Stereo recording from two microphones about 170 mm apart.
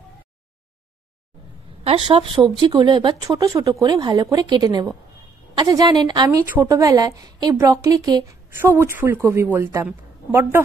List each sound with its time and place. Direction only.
1.9 s a woman's voice: 35° right (ahead or behind); by 10.6 s 15° right (ahead or behind)